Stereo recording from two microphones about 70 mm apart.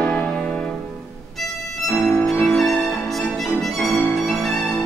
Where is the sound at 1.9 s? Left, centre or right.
Centre.